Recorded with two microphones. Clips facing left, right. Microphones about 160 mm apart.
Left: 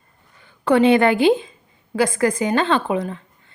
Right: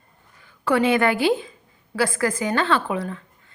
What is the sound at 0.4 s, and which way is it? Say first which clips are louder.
A woman's voice: left 5 dB; 25° left (ahead or behind).